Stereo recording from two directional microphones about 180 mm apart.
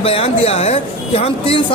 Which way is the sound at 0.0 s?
30° left (ahead or behind).